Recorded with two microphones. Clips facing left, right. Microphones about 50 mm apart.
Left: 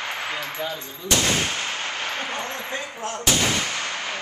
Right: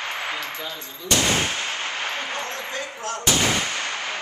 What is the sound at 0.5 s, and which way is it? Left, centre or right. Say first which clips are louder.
Speech: left 3 dB; centre.